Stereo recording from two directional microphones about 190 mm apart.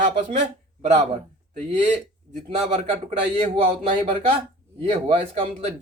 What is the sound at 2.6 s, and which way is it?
Speech, 35° right (ahead or behind).